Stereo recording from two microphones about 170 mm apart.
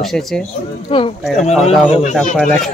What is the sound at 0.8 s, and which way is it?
A man's voice, 30° left (ahead or behind).